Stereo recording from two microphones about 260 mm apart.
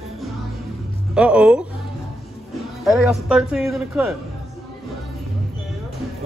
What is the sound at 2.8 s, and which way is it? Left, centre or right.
Speech, centre.